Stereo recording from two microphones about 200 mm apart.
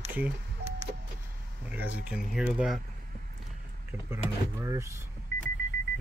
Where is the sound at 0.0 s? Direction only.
10° right (ahead or behind).